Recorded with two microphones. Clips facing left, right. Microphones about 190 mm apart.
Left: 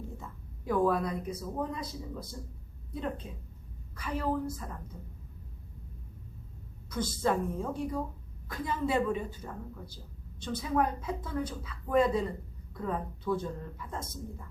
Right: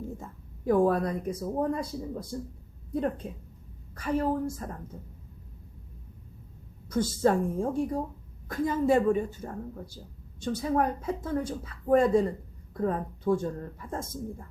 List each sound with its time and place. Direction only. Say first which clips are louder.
0.2 s speech: right 4 dB; 45° right (ahead or behind)
3.9 s a woman's voice: right 5 dB; 45° right (ahead or behind)
6.9 s a woman's voice: right 5 dB; 45° right (ahead or behind)